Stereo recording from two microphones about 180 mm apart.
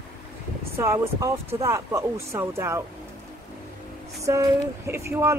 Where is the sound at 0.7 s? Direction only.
15° right (ahead or behind).